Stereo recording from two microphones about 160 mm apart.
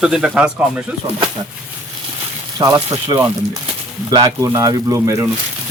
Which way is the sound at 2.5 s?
20° right (ahead or behind).